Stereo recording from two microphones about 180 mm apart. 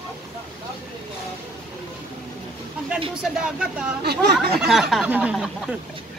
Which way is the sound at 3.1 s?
5° right (ahead or behind).